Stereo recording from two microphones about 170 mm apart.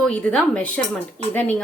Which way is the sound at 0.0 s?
5° left (ahead or behind).